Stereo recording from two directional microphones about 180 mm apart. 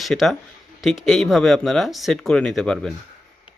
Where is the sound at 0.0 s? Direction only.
Centre (ahead or behind).